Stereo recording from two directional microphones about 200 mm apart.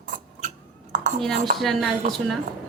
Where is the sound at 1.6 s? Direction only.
Centre (ahead or behind).